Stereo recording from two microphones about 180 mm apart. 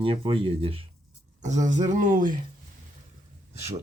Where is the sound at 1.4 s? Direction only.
40° right (ahead or behind).